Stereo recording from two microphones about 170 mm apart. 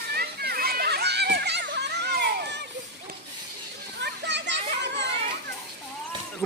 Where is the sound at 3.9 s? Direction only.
90° right.